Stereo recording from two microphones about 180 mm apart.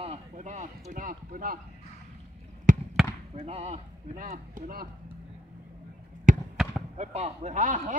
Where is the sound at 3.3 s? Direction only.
35° right (ahead or behind).